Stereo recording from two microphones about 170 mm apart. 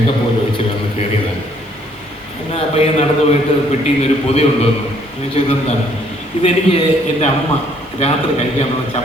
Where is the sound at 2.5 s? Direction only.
35° left (ahead or behind).